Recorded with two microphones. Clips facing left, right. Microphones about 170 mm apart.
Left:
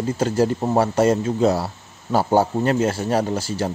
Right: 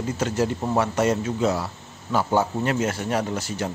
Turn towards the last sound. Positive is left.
turn(degrees=30)  # may be behind; listen again after turning